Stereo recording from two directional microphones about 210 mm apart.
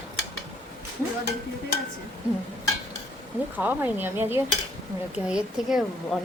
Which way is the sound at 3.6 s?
10° right (ahead or behind).